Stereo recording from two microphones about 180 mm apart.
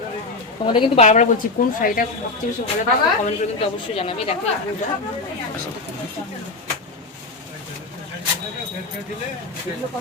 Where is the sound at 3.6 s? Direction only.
30° left (ahead or behind).